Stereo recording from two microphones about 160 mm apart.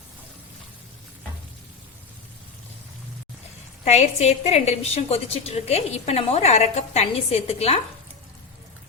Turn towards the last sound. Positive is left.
turn(degrees=40)  # may be behind; listen again after turning